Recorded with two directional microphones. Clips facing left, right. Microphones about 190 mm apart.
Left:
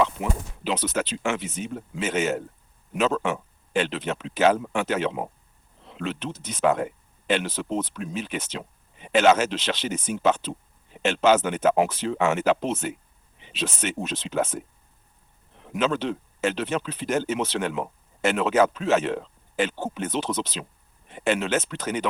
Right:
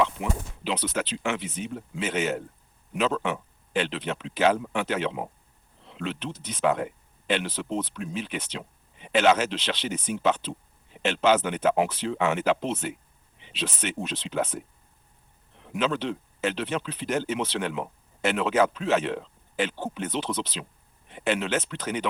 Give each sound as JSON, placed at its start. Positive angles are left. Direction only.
{"t": 0.0, "sound": "speech", "side_deg": 45}
{"t": 15.7, "sound": "speech", "side_deg": 45}